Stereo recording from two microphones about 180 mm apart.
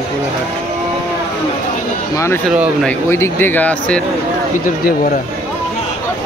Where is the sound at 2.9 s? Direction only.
15° left (ahead or behind).